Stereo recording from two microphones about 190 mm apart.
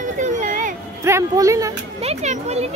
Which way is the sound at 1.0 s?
15° right (ahead or behind).